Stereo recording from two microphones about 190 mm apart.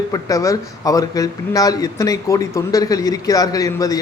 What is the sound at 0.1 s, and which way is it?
A man's voice, 20° left (ahead or behind).